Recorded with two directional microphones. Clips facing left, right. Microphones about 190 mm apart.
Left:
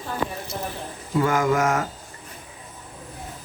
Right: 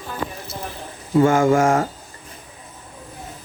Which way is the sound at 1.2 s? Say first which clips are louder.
Right 5 dB; 25° right (ahead or behind).